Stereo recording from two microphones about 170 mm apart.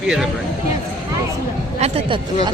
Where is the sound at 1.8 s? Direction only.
35° right (ahead or behind).